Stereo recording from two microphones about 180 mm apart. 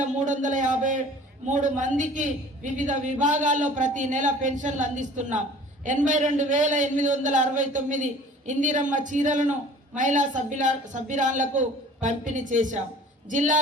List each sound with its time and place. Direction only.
0.0 s a man's voice: 45° right (ahead or behind)